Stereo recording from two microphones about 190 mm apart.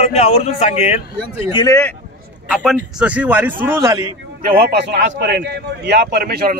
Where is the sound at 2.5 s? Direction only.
Centre (ahead or behind).